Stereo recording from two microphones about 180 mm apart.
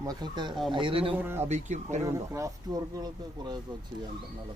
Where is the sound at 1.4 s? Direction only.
40° right (ahead or behind).